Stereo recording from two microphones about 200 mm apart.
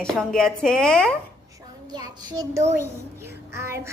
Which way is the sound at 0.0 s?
5° left (ahead or behind).